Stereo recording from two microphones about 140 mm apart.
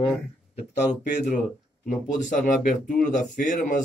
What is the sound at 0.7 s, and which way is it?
Speech, 60° left (ahead or behind).